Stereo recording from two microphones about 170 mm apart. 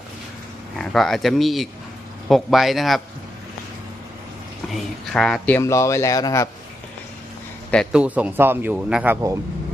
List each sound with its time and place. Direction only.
0.7 s a man's voice: centre (ahead or behind)
4.6 s a man's voice: centre (ahead or behind)
5.6 s speech: 15° left (ahead or behind)
7.7 s speech: centre (ahead or behind)